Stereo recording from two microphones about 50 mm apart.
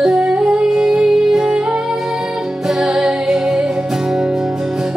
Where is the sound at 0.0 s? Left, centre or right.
Centre.